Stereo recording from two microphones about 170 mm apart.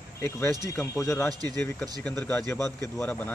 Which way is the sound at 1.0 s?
15° left (ahead or behind).